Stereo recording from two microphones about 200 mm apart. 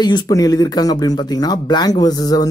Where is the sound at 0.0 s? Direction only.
20° left (ahead or behind).